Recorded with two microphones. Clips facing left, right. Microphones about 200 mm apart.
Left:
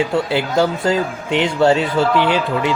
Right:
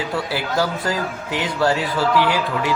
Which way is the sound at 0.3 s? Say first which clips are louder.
Left 4 dB; 25° left (ahead or behind).